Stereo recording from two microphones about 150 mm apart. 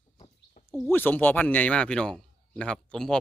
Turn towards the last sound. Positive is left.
turn(degrees=5)  # may be behind; listen again after turning